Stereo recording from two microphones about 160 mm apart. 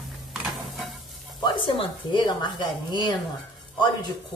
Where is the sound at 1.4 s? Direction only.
30° left (ahead or behind).